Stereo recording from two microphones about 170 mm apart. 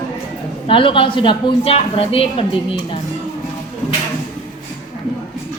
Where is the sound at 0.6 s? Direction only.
30° left (ahead or behind).